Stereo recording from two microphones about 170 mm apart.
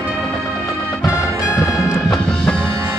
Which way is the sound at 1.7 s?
5° left (ahead or behind).